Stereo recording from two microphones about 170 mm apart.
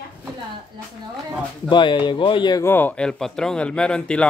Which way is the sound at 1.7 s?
30° left (ahead or behind).